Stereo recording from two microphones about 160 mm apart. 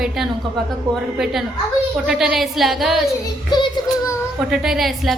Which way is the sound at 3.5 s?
25° left (ahead or behind).